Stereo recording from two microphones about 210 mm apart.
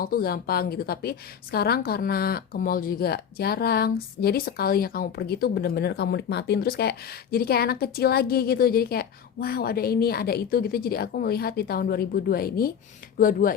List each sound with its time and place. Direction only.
0.0 s a woman's voice: 45° left (ahead or behind)